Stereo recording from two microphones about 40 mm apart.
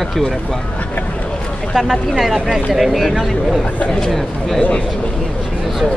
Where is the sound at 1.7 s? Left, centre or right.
Centre.